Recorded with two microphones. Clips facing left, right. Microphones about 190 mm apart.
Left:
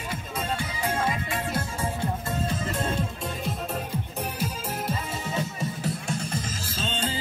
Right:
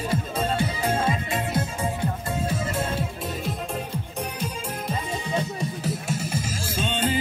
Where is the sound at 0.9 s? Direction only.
25° right (ahead or behind).